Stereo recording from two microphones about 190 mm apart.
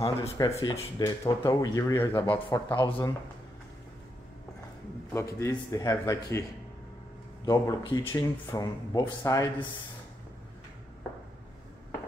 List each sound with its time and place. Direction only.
0.4 s speech: 20° left (ahead or behind)
5.1 s speech: 15° left (ahead or behind)
7.4 s speech: 20° left (ahead or behind)